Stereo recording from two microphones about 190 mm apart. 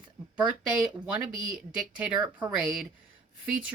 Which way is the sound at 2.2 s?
15° right (ahead or behind).